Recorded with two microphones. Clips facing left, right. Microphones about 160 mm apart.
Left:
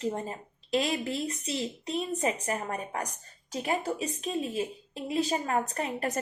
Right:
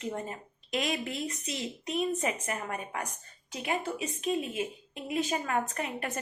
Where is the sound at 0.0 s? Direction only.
30° left (ahead or behind).